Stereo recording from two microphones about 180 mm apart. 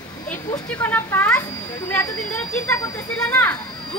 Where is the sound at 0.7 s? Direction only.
10° left (ahead or behind).